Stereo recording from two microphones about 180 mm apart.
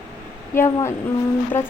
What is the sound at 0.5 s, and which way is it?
Speech, 15° left (ahead or behind).